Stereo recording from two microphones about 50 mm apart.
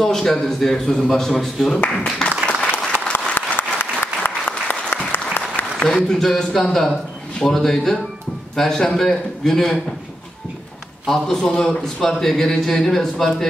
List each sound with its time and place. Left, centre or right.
0.0 s speech: centre
2.7 s applause: left
5.8 s speech: centre
11.1 s speech: centre